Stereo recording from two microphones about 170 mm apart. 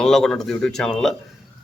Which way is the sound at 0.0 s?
5° left (ahead or behind).